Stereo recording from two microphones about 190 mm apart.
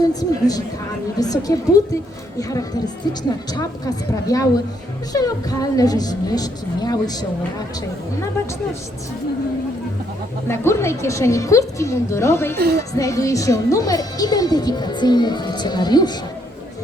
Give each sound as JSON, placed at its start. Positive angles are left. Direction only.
{"t": 0.1, "sound": "a woman's voice", "side_deg": 20}
{"t": 10.5, "sound": "a woman's voice", "side_deg": 15}
{"t": 12.5, "sound": "speech", "side_deg": -55}
{"t": 12.9, "sound": "a woman's voice", "side_deg": 15}